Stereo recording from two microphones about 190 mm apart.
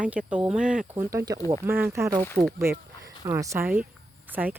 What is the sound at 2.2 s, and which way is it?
Speech, 5° left (ahead or behind).